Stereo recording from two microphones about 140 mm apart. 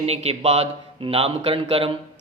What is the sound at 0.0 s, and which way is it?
A man's voice, 45° right (ahead or behind).